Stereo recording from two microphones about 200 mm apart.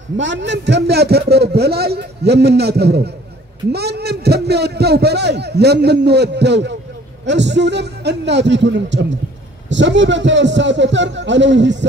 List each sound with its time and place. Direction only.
0.2 s a man's voice: 65° right (ahead or behind)